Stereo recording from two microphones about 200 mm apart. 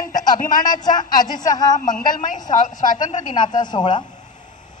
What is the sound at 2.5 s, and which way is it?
Speech, 40° left (ahead or behind).